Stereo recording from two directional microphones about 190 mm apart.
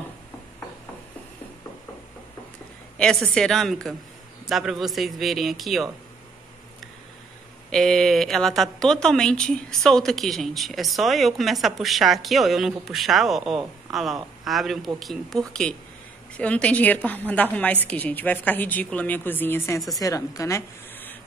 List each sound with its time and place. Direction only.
3.0 s speech: centre (ahead or behind)
7.7 s a woman's voice: centre (ahead or behind)